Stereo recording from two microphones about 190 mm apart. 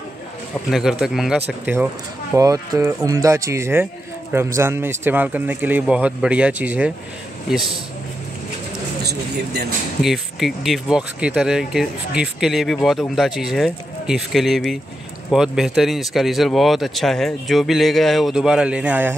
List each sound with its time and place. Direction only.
0.7 s speech: centre (ahead or behind)
2.3 s speech: 15° right (ahead or behind)
9.0 s speech: 60° right (ahead or behind)
10.0 s speech: centre (ahead or behind)